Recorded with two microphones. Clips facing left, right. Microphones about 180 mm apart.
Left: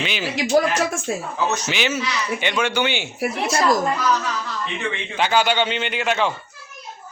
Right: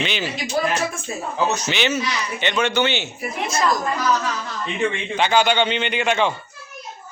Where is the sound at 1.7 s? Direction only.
10° left (ahead or behind).